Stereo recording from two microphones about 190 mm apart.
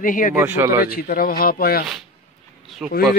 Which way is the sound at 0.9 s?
50° left (ahead or behind).